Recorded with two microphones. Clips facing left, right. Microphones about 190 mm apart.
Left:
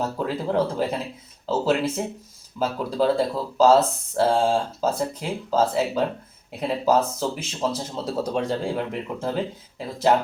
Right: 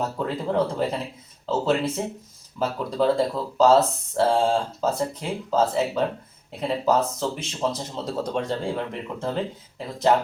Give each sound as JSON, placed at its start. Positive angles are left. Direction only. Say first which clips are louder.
{"t": 0.2, "sound": "speech", "louder": "even", "side_deg": 5}